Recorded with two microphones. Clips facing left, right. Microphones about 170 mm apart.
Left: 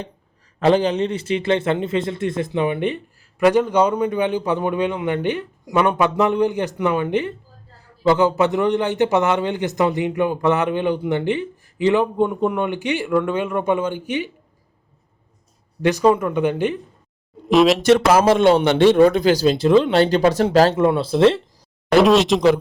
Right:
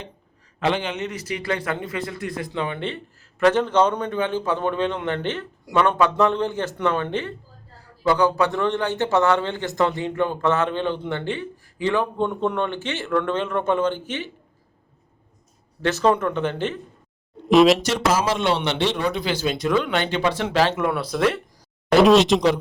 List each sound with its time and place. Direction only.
0.6 s a man's voice: 35° left (ahead or behind); by 14.3 s 15° left (ahead or behind)
15.8 s a man's voice: 15° left (ahead or behind)
17.5 s speech: centre (ahead or behind)
17.8 s a man's voice: 60° left (ahead or behind); by 21.4 s 25° left (ahead or behind)
22.0 s speech: centre (ahead or behind)